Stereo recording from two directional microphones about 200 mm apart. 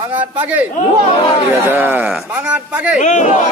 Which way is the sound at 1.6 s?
10° right (ahead or behind).